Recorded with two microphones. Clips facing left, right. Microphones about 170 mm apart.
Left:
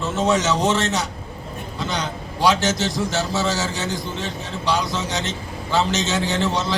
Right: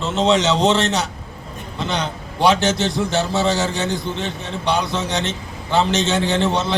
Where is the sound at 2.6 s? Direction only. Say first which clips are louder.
Right 3 dB; 60° right (ahead or behind).